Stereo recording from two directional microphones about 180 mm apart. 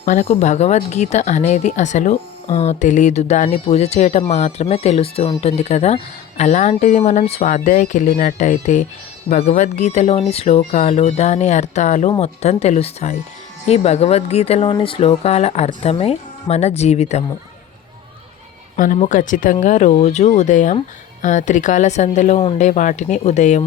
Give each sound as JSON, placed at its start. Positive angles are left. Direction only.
{"t": 0.0, "sound": "speech", "side_deg": 40}
{"t": 18.9, "sound": "speech", "side_deg": 45}